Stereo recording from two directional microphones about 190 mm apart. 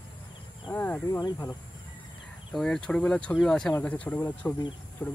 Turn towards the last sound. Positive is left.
turn(degrees=10)  # may be behind; listen again after turning